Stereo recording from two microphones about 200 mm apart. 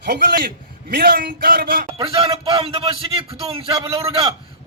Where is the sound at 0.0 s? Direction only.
55° right (ahead or behind).